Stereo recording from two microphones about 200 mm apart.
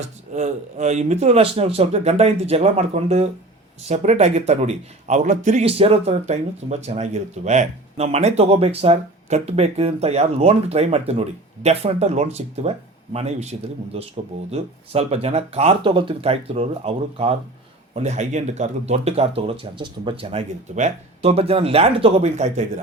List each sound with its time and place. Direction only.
0.3 s speech: 35° right (ahead or behind)